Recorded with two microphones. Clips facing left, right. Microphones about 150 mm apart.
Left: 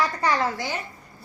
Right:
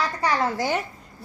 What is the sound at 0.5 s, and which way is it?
Speech, 50° right (ahead or behind).